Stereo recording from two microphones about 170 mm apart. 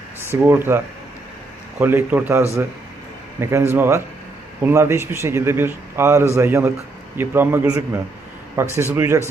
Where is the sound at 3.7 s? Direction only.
15° right (ahead or behind).